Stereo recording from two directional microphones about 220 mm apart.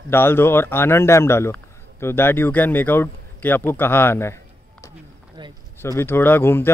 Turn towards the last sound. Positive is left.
turn(degrees=10)  # may be behind; listen again after turning